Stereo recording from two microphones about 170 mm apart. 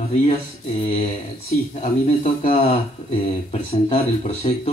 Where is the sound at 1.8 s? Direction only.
40° left (ahead or behind).